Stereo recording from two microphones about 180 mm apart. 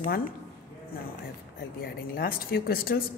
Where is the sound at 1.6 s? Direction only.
55° left (ahead or behind).